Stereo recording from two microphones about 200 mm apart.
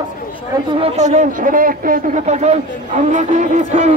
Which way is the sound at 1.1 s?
45° right (ahead or behind).